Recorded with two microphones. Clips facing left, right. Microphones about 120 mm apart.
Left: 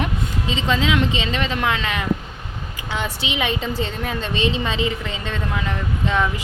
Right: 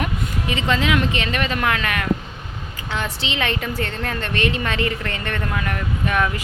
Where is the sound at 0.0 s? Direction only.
20° left (ahead or behind).